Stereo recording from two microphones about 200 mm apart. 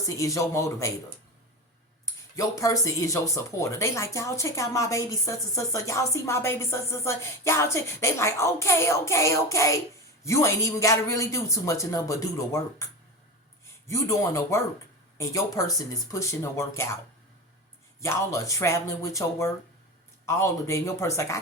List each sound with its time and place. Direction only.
0.0 s speech: 15° left (ahead or behind)
2.3 s speech: 15° left (ahead or behind)
13.8 s speech: 15° left (ahead or behind)
18.0 s speech: 15° left (ahead or behind)